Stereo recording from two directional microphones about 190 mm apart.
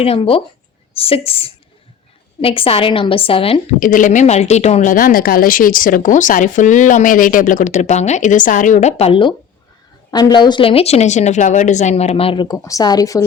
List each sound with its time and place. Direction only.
0.0 s a woman's voice: 30° left (ahead or behind)
3.8 s a woman's voice: 45° left (ahead or behind); by 13.2 s 20° left (ahead or behind)